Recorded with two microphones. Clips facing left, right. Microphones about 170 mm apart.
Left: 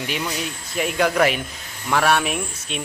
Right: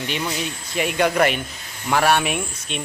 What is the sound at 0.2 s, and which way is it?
Speech, centre (ahead or behind).